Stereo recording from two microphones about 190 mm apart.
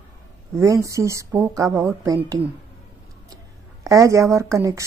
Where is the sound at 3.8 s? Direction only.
15° right (ahead or behind).